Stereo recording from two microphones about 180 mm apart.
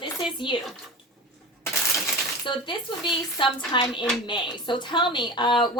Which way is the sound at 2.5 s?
25° left (ahead or behind).